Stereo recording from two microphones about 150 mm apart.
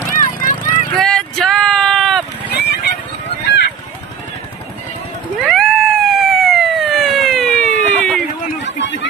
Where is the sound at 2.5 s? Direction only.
90° left.